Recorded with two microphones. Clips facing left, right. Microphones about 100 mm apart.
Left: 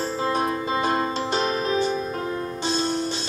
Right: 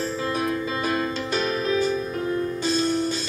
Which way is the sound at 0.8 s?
35° left (ahead or behind).